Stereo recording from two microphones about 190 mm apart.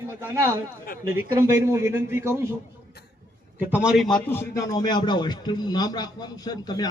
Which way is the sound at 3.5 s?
5° right (ahead or behind).